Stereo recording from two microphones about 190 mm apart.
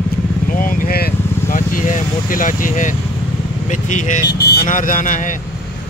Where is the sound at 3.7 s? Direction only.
40° left (ahead or behind).